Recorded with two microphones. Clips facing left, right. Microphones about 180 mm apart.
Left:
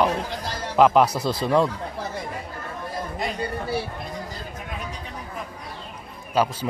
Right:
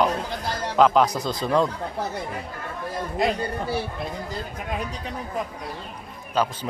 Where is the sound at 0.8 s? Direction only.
5° left (ahead or behind).